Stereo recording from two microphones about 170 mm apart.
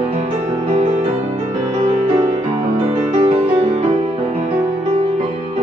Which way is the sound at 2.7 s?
35° right (ahead or behind).